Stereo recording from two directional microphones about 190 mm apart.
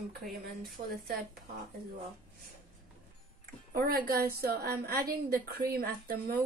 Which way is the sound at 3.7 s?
50° right (ahead or behind).